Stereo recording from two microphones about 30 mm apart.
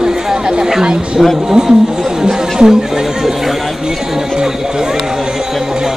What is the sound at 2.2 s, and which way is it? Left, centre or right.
Speech, centre.